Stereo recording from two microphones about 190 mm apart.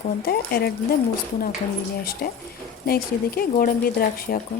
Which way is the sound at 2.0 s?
55° left (ahead or behind).